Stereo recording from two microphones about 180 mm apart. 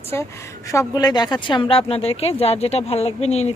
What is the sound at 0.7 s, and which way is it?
Speech, 20° left (ahead or behind).